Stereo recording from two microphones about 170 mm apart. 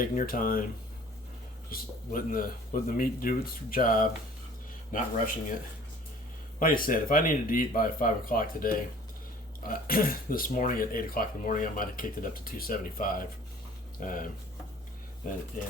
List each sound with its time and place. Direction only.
0.0 s speech: 55° left (ahead or behind)
1.7 s speech: 60° left (ahead or behind)
6.6 s speech: 55° left (ahead or behind)